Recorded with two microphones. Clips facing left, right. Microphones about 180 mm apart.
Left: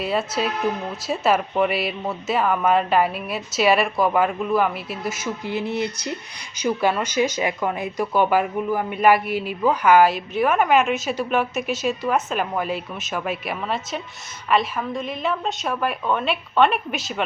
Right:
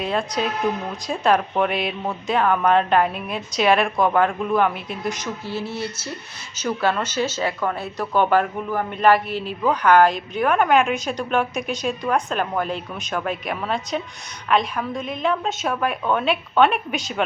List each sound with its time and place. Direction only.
0.0 s speech: 5° left (ahead or behind)
5.5 s speech: 15° left (ahead or behind); by 17.2 s centre (ahead or behind)